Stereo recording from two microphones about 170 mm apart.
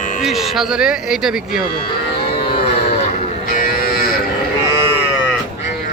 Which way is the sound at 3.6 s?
55° left (ahead or behind).